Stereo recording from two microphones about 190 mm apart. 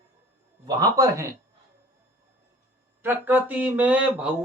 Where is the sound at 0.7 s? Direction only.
20° right (ahead or behind).